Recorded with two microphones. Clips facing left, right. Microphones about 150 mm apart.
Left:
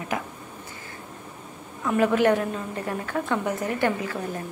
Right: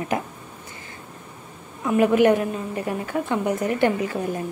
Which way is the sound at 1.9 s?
15° right (ahead or behind).